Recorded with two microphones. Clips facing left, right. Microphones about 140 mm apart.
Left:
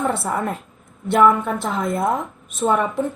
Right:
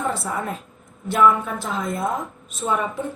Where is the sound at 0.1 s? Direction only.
55° left (ahead or behind).